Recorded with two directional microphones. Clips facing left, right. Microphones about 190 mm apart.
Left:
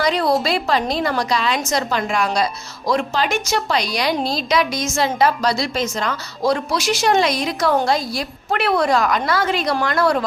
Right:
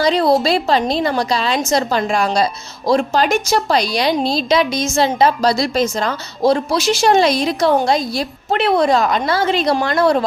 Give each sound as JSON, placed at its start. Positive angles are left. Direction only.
{"t": 0.0, "sound": "a woman's voice", "side_deg": -25}